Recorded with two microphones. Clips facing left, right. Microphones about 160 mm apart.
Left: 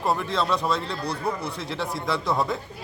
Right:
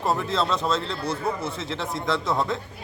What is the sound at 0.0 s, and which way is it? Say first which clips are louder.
Speech: even; centre (ahead or behind).